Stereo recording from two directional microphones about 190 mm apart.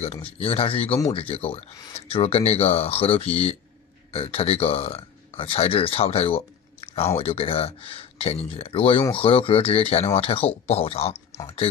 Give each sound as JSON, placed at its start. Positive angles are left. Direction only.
{"t": 0.0, "sound": "speech", "side_deg": 30}